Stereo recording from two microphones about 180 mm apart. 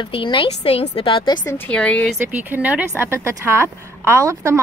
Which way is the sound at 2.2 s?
10° right (ahead or behind).